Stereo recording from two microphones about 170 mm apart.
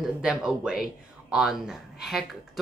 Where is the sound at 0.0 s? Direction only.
5° right (ahead or behind).